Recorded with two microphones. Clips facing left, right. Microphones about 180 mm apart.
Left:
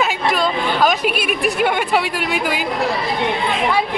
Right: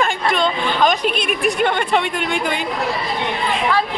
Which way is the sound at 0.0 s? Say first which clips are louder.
Even; 5° left (ahead or behind).